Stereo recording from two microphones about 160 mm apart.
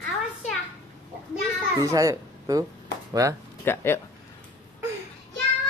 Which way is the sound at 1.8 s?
20° right (ahead or behind).